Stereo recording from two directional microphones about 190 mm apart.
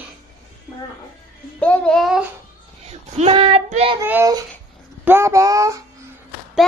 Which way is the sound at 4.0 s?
15° right (ahead or behind).